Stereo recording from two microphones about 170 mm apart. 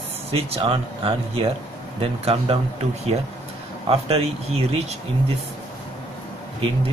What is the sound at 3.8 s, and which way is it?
Speech, 35° right (ahead or behind).